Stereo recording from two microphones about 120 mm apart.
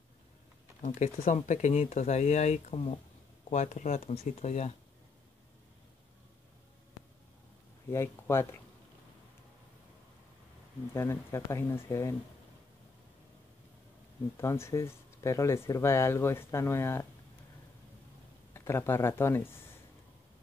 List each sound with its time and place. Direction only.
0.8 s speech: 85° left
3.4 s speech: 90° left; by 4.7 s 70° left (ahead or behind)
7.9 s speech: 20° left (ahead or behind)
10.9 s speech: 25° left (ahead or behind)
14.3 s speech: 25° left (ahead or behind)
18.5 s speech: 20° left (ahead or behind)